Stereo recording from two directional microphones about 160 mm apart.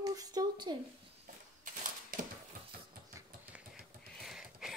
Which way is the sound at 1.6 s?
55° right (ahead or behind).